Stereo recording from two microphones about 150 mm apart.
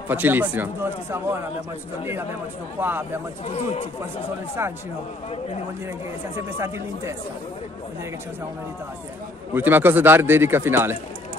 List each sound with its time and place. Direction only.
0.1 s a man's voice: 15° right (ahead or behind)
2.8 s a man's voice: 15° right (ahead or behind)
3.4 s speech: 45° left (ahead or behind)
6.3 s speech: 20° right (ahead or behind)
9.5 s a man's voice: 15° right (ahead or behind)